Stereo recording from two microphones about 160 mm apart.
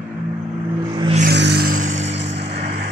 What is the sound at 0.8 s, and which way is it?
Vehicle, 30° right (ahead or behind).